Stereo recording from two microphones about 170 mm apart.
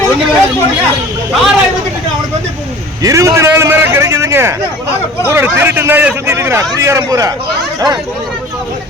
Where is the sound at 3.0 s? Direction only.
20° right (ahead or behind).